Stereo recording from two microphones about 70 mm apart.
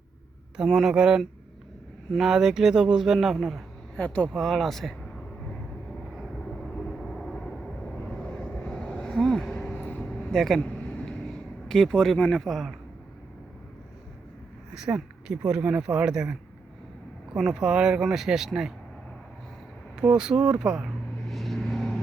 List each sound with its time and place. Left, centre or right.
0.5 s speech: centre
3.9 s speech: centre
4.3 s vehicle: centre
7.0 s vehicle: centre
10.3 s speech: centre
10.6 s a sound: centre
11.7 s speech: centre
14.8 s speech: centre
17.5 s speech: centre
20.0 s speech: centre
21.2 s vehicle: centre